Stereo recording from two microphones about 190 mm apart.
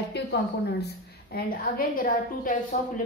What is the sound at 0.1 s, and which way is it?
Speech, 60° left (ahead or behind).